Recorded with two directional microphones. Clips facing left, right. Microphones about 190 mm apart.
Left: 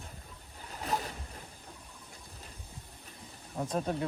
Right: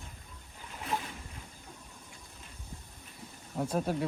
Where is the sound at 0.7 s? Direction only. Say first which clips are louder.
Left 2 dB; 40° left (ahead or behind).